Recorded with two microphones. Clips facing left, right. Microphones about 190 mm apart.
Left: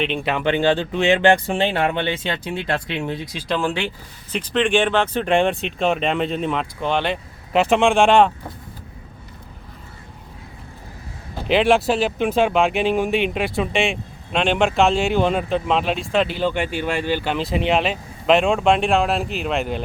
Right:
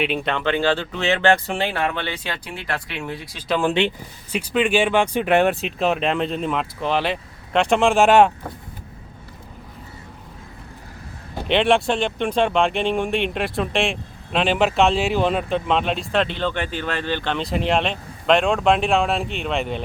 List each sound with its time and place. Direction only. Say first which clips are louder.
0.0 s speech: even; 5° right (ahead or behind)
0.3 s speech: left 4 dB; 15° left (ahead or behind)
3.6 s speech: right 3 dB; 20° right (ahead or behind)
11.4 s speech: left 2 dB; centre (ahead or behind)